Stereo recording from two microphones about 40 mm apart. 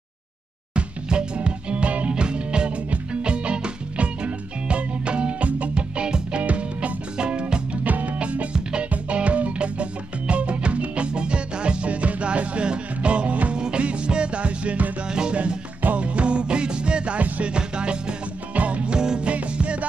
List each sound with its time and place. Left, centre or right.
0.7 s music: right
5.8 s music: right
6.4 s music: right
7.2 s music: right
7.8 s music: right
15.0 s music: centre
16.0 s music: right
18.5 s music: right
18.9 s music: centre
19.2 s music: right